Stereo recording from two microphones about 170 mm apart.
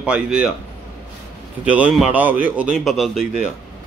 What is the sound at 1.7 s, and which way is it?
A man's voice, 10° right (ahead or behind).